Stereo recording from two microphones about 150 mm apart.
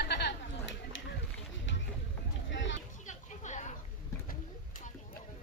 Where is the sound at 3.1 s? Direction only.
55° left (ahead or behind).